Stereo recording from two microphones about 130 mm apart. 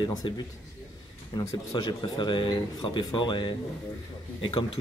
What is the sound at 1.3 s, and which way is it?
A man's voice, 30° left (ahead or behind).